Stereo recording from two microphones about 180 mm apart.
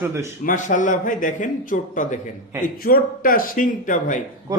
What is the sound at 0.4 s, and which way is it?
Speech, 45° left (ahead or behind).